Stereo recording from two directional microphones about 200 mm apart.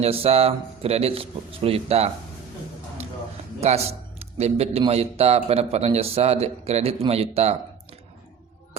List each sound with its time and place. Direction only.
0.0 s speech: 30° right (ahead or behind)
3.6 s a man's voice: 30° right (ahead or behind)